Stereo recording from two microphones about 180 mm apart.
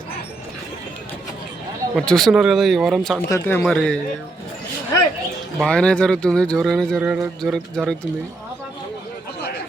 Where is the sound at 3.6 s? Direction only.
5° left (ahead or behind).